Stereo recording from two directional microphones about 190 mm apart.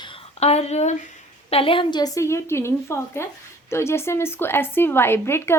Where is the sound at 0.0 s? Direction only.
35° left (ahead or behind).